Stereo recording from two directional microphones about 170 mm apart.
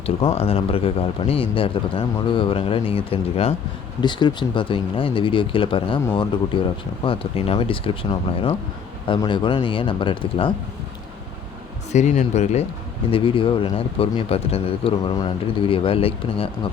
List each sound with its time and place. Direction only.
0.3 s speech: 35° left (ahead or behind)
11.9 s speech: 45° left (ahead or behind)